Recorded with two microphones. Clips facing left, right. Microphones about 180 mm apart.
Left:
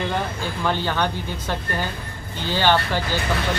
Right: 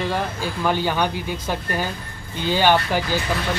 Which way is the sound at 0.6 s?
10° right (ahead or behind).